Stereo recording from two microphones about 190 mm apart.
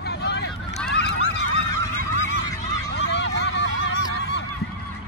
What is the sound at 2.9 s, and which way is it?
Honk, 65° left (ahead or behind).